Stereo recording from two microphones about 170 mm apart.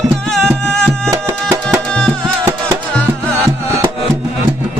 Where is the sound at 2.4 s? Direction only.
15° right (ahead or behind).